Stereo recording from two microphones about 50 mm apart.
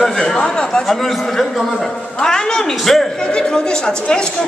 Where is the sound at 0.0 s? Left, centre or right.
Centre.